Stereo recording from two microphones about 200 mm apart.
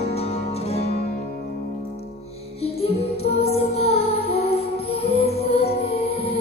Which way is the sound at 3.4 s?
30° left (ahead or behind).